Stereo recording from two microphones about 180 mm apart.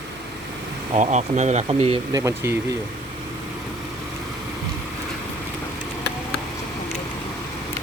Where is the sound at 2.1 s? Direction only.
15° right (ahead or behind).